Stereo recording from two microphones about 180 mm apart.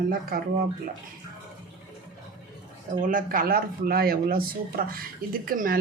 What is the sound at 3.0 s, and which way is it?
Speech, 50° right (ahead or behind).